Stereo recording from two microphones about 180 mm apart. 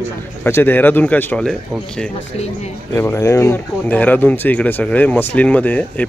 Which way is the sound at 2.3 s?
35° left (ahead or behind).